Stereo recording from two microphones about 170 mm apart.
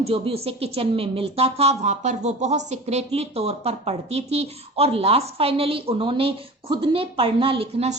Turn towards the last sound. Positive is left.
turn(degrees=-35)  # may be behind; listen again after turning